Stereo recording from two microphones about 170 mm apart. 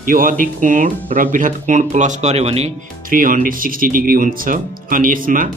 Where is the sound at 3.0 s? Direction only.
55° right (ahead or behind).